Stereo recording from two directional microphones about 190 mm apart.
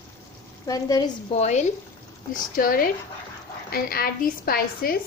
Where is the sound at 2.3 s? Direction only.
50° left (ahead or behind).